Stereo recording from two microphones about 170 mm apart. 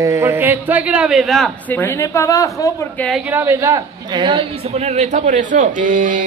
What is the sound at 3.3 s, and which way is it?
Speech, 10° right (ahead or behind).